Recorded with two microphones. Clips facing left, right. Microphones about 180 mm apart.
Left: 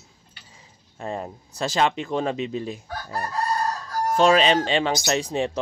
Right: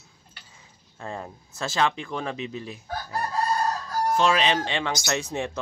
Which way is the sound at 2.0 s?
25° left (ahead or behind).